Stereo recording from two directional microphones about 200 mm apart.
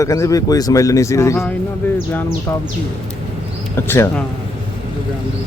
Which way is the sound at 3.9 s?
10° left (ahead or behind).